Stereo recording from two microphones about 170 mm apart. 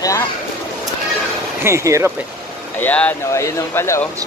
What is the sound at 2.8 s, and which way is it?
Speech, 10° left (ahead or behind).